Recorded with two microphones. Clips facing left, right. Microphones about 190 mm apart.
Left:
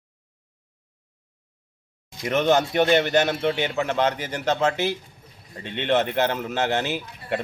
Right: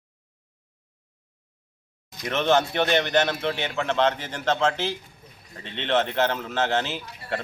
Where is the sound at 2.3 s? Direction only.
15° left (ahead or behind).